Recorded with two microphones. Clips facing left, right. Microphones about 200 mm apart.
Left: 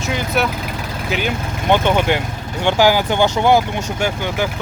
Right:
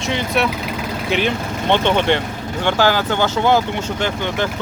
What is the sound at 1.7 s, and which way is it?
Speech, 10° left (ahead or behind).